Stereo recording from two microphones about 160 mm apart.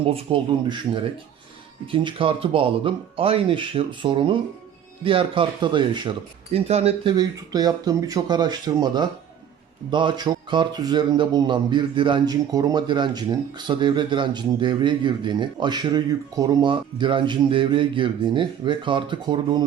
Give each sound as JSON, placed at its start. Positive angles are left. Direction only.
{"t": 0.0, "sound": "speech", "side_deg": -35}